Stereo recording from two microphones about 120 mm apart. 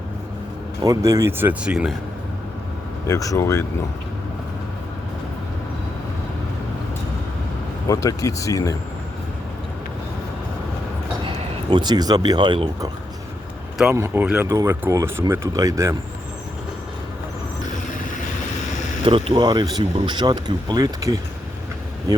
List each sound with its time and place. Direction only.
0.8 s speech: 25° right (ahead or behind); by 2.0 s 5° right (ahead or behind)
3.1 s speech: 25° left (ahead or behind)
7.9 s speech: 25° left (ahead or behind)
11.3 s speech: 40° right (ahead or behind)
13.9 s speech: 20° right (ahead or behind)
14.4 s speech: 25° right (ahead or behind)
19.0 s speech: 50° right (ahead or behind); by 21.2 s 30° right (ahead or behind)